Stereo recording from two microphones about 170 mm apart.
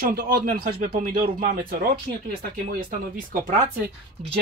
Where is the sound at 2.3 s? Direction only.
60° right (ahead or behind).